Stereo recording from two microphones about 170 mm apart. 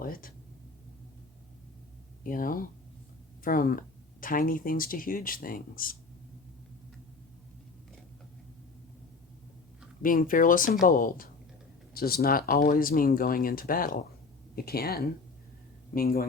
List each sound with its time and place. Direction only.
0.0 s speech: 60° left (ahead or behind)
2.2 s speech: 55° left (ahead or behind)
10.0 s speech: 55° left (ahead or behind)